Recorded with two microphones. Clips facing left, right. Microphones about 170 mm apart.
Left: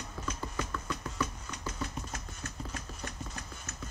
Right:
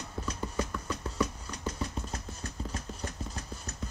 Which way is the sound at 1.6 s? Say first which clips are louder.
Right 3 dB; 35° right (ahead or behind).